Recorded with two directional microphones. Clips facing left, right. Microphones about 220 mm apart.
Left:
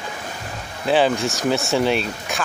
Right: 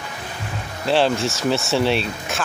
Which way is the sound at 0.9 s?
Centre (ahead or behind).